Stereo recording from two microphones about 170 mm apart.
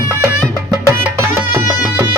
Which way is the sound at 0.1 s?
15° right (ahead or behind).